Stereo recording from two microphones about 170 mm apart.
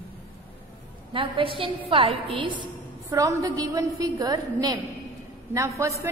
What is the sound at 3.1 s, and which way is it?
A woman's voice, 20° right (ahead or behind).